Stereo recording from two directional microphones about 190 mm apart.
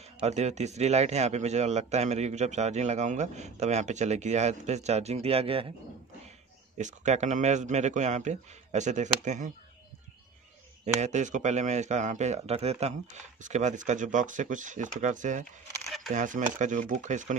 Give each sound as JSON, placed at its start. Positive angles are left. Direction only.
{"t": 0.2, "sound": "a man's voice", "side_deg": -35}
{"t": 6.8, "sound": "a man's voice", "side_deg": -40}
{"t": 11.0, "sound": "a man's voice", "side_deg": -40}
{"t": 15.8, "sound": "a sound", "side_deg": 0}
{"t": 16.1, "sound": "a man's voice", "side_deg": -40}